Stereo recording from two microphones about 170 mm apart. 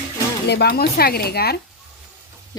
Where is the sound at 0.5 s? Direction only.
70° left (ahead or behind).